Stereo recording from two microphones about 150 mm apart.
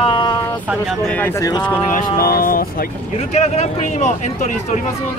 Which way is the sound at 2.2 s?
80° left.